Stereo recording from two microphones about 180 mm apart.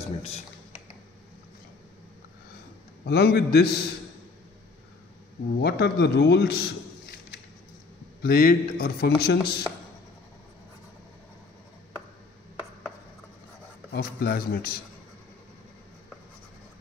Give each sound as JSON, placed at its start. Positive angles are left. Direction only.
{"t": 0.0, "sound": "speech", "side_deg": 35}
{"t": 3.1, "sound": "a man's voice", "side_deg": 65}
{"t": 5.6, "sound": "a man's voice", "side_deg": 65}
{"t": 13.9, "sound": "a man's voice", "side_deg": 55}